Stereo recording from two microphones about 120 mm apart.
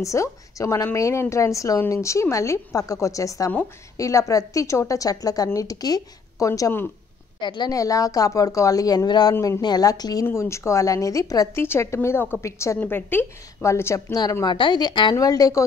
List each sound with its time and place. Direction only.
0.0 s a woman's voice: 25° left (ahead or behind)
7.3 s a woman's voice: 40° left (ahead or behind); by 14.1 s 20° left (ahead or behind)
14.4 s a woman's voice: 40° left (ahead or behind)